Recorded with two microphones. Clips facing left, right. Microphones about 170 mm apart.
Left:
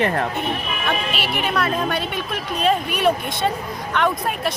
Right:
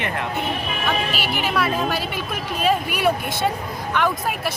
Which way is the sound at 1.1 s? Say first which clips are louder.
Even; centre (ahead or behind).